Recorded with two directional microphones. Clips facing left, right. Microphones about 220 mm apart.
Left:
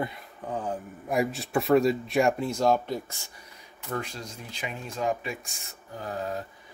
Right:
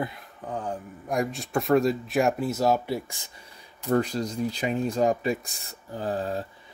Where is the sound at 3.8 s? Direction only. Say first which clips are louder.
Right 10 dB; 35° right (ahead or behind).